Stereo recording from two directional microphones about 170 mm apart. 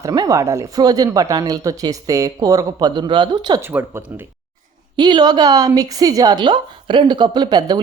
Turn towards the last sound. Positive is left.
turn(degrees=-25)  # may be behind; listen again after turning